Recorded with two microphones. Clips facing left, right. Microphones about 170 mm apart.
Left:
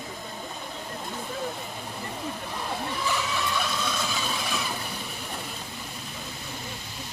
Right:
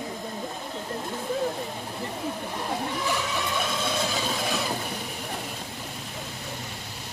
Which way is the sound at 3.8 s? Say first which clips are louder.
Right 3 dB; 25° right (ahead or behind).